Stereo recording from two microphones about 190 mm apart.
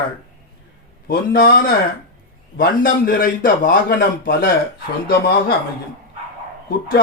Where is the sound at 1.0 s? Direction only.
55° left (ahead or behind).